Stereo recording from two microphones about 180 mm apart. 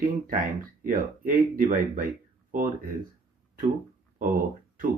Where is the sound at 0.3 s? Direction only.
50° right (ahead or behind).